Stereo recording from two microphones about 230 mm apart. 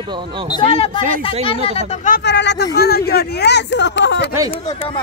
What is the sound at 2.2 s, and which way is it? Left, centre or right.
Speech, left.